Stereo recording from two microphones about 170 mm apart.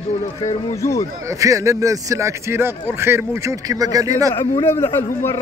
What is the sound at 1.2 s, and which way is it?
A man's voice, 20° right (ahead or behind).